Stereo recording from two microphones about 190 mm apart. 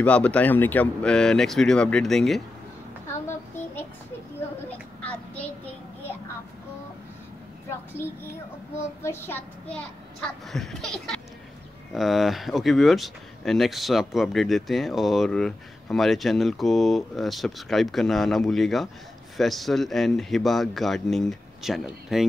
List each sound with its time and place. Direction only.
0.0 s speech: 5° left (ahead or behind)
5.0 s child singing: 10° left (ahead or behind)
9.0 s speech: 10° left (ahead or behind)